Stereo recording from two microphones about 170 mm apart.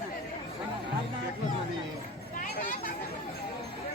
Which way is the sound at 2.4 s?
55° left (ahead or behind).